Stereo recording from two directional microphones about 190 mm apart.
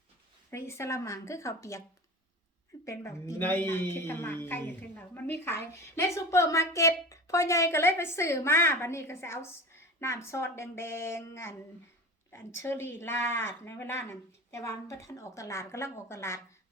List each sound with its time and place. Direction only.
0.5 s a woman's voice: 15° left (ahead or behind)
2.8 s a woman's voice: 15° left (ahead or behind)